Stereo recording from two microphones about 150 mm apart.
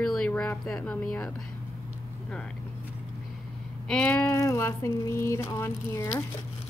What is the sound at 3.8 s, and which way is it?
Speech, 5° left (ahead or behind).